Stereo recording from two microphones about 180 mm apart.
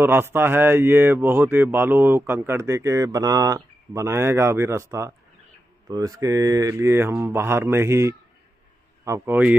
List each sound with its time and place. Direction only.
0.0 s speech: 10° right (ahead or behind)
5.9 s speech: 20° right (ahead or behind)